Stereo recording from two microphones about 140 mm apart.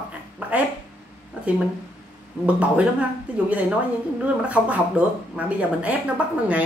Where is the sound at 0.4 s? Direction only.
10° right (ahead or behind).